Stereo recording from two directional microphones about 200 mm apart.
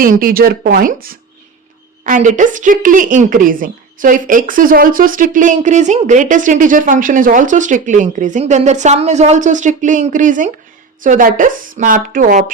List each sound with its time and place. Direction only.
0.0 s a woman's voice: 45° right (ahead or behind)